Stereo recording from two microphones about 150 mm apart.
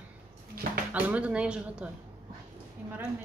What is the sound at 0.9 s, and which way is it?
Speech, 10° right (ahead or behind).